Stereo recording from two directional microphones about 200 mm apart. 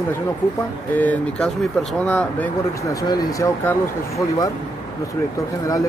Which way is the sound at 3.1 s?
15° left (ahead or behind).